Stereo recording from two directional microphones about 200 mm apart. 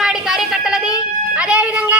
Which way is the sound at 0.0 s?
Centre (ahead or behind).